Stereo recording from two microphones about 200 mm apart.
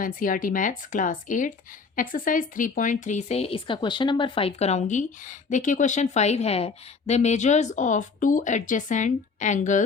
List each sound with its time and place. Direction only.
0.0 s speech: 45° left (ahead or behind)